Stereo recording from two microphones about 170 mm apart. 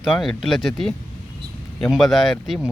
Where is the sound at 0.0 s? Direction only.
Centre (ahead or behind).